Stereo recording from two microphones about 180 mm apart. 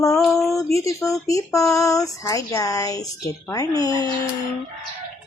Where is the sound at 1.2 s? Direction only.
20° left (ahead or behind).